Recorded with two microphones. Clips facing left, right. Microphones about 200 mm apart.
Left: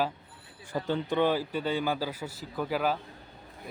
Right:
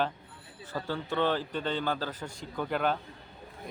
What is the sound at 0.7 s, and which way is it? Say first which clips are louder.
A man's voice: left 4 dB; 20° left (ahead or behind).